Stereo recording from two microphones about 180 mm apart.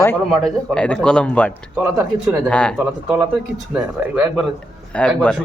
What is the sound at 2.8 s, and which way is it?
Speech, 10° right (ahead or behind).